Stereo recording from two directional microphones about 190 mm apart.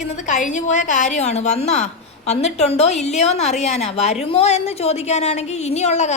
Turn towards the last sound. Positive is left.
turn(degrees=35)  # may be behind; listen again after turning